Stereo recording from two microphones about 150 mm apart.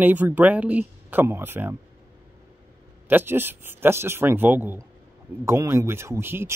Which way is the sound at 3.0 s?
15° right (ahead or behind).